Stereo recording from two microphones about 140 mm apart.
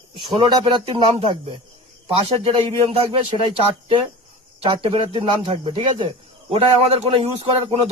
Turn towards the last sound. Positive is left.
turn(degrees=-40)  # may be behind; listen again after turning